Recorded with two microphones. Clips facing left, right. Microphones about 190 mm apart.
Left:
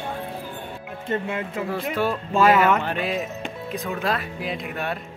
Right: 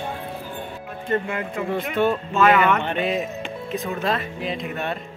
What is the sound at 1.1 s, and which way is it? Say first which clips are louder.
Speech: right 2 dB; 25° left (ahead or behind).